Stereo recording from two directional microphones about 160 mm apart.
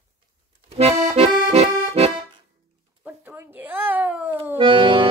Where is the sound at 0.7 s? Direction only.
40° right (ahead or behind).